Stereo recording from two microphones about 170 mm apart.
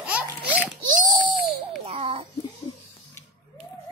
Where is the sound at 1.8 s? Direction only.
35° right (ahead or behind).